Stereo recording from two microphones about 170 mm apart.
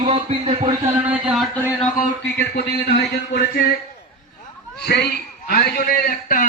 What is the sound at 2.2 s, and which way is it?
A man's voice, 75° left (ahead or behind).